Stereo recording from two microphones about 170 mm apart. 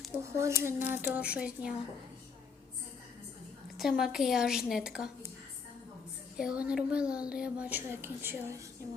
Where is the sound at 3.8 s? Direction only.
Centre (ahead or behind).